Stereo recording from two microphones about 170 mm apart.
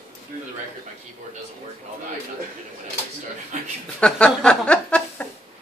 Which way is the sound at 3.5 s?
45° right (ahead or behind).